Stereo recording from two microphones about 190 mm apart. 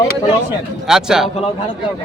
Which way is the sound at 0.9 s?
5° right (ahead or behind).